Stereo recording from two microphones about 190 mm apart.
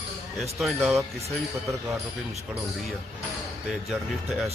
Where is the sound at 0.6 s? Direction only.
Centre (ahead or behind).